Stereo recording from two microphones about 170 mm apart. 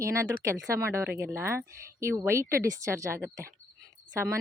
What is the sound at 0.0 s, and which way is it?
A woman's voice, 15° right (ahead or behind).